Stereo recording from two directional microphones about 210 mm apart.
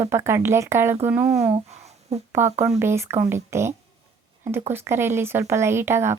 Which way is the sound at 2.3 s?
10° right (ahead or behind).